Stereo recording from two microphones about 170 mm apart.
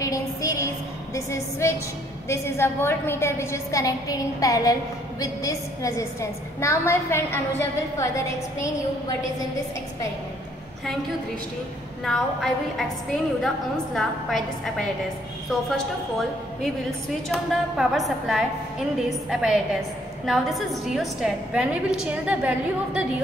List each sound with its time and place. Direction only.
0.0 s a sound: 20° left (ahead or behind)
1.1 s a woman's voice: 20° left (ahead or behind)
12.0 s a woman's voice: centre (ahead or behind)